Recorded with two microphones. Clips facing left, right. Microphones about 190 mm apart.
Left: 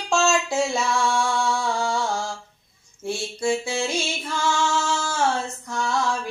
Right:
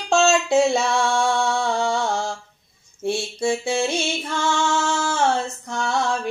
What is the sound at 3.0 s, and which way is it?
Mantra, 25° right (ahead or behind).